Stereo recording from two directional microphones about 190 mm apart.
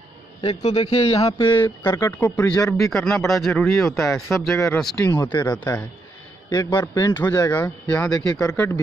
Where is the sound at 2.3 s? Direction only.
5° left (ahead or behind).